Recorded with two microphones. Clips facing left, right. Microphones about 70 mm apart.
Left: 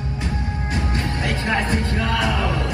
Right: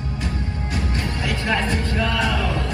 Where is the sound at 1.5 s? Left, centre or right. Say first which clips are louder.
Even; left.